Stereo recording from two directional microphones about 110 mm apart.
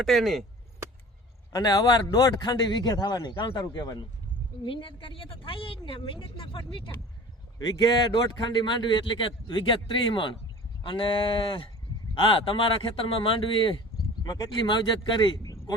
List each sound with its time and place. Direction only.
0.0 s speech: centre (ahead or behind)
1.5 s a man's voice: 40° left (ahead or behind)
4.6 s a man's voice: 50° left (ahead or behind)